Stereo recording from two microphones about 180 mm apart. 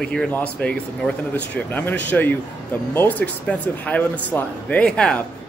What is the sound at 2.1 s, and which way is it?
Speech, 5° left (ahead or behind).